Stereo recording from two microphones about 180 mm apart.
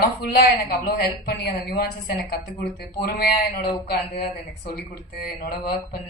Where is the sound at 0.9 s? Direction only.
60° left (ahead or behind).